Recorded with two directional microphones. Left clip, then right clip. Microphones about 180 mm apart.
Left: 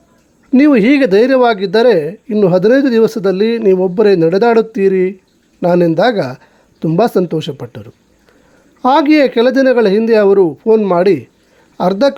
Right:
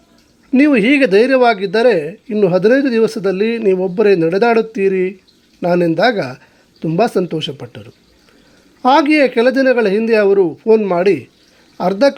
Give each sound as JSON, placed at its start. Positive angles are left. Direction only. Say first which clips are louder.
{"t": 0.5, "sound": "speech", "louder": "left 2 dB", "side_deg": 30}